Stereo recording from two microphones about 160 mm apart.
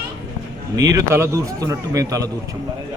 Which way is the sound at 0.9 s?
15° right (ahead or behind).